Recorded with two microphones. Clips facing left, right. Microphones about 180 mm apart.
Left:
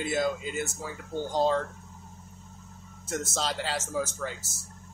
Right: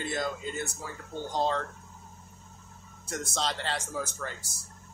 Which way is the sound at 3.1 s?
Centre (ahead or behind).